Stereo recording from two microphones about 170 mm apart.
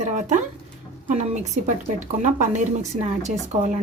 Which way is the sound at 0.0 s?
45° right (ahead or behind).